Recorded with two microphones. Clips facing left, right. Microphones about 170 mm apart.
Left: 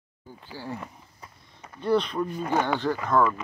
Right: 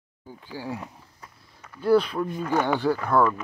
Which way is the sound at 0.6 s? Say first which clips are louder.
Right 2 dB; 10° right (ahead or behind).